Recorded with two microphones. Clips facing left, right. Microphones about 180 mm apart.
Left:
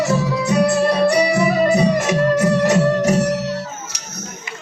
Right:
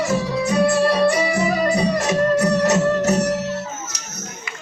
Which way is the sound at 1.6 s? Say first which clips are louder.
Left 4 dB; 20° left (ahead or behind).